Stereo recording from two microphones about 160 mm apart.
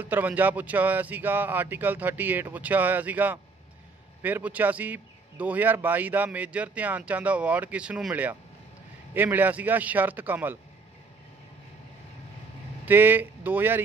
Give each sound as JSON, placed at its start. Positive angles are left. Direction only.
{"t": 0.0, "sound": "a man's voice", "side_deg": -10}
{"t": 12.8, "sound": "speech", "side_deg": -10}